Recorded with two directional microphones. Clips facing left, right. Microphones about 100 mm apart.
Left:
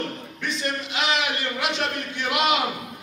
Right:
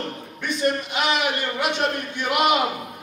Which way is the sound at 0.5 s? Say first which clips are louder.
Right 6 dB; 50° right (ahead or behind).